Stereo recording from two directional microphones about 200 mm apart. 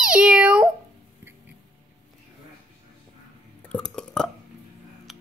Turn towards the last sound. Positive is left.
turn(degrees=0)  # may be behind; listen again after turning